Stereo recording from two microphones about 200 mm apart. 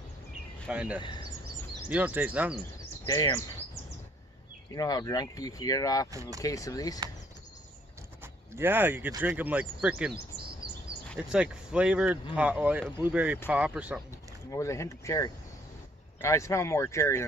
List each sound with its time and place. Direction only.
0.7 s speech: 5° right (ahead or behind)
3.1 s speech: 15° left (ahead or behind)
4.7 s speech: 20° left (ahead or behind)
8.5 s speech: 10° right (ahead or behind)
14.5 s speech: 15° left (ahead or behind)